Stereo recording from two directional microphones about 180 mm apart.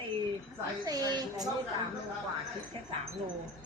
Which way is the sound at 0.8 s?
20° right (ahead or behind).